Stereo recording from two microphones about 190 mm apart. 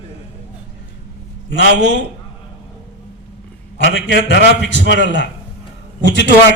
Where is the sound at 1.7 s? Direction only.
60° right (ahead or behind).